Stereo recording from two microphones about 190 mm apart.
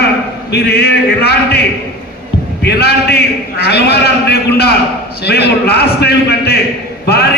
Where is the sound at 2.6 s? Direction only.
55° left (ahead or behind).